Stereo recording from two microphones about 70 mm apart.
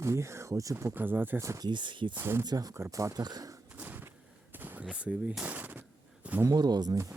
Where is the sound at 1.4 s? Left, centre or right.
Right.